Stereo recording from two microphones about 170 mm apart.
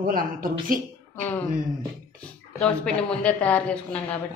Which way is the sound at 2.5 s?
5° left (ahead or behind).